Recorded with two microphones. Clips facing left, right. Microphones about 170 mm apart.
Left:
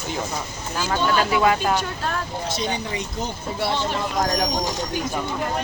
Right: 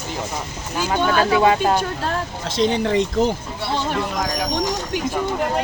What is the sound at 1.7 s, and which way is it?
Speech, 35° right (ahead or behind).